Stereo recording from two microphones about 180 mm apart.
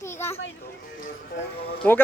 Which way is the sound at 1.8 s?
10° left (ahead or behind).